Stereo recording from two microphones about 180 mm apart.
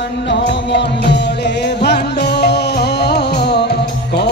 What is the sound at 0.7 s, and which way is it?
Music, 75° left (ahead or behind).